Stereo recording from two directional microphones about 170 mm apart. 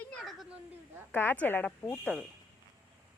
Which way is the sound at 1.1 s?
10° left (ahead or behind).